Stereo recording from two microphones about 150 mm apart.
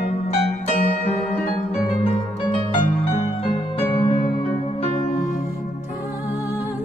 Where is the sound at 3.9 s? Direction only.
35° left (ahead or behind).